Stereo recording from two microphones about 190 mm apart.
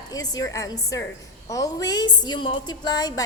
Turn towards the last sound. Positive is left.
turn(degrees=20)  # may be behind; listen again after turning